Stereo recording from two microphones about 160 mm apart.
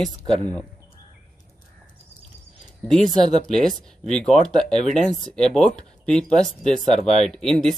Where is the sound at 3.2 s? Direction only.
40° left (ahead or behind).